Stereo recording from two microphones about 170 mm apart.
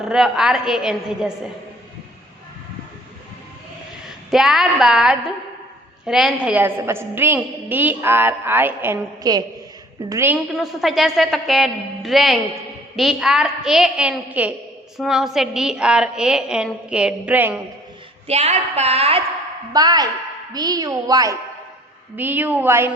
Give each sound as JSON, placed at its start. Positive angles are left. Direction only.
{"t": 0.0, "sound": "a woman's voice", "side_deg": -5}
{"t": 4.3, "sound": "a woman's voice", "side_deg": -5}
{"t": 18.3, "sound": "a woman's voice", "side_deg": -40}
{"t": 19.7, "sound": "a woman's voice", "side_deg": -25}